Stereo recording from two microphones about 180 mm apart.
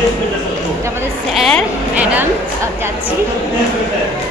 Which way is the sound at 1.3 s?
Centre (ahead or behind).